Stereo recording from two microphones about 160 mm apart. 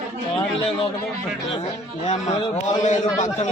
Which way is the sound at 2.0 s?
45° left (ahead or behind).